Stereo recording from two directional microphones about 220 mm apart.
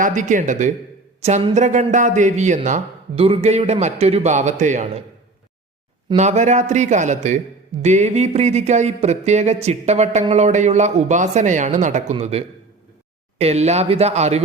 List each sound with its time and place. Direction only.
0.0 s speech: 35° right (ahead or behind)
6.1 s speech: 30° right (ahead or behind)